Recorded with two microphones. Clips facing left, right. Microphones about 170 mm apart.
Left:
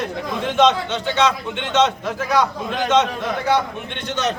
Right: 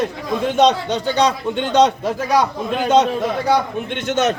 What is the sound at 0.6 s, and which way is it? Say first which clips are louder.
A man's voice: right 1 dB; 40° right (ahead or behind).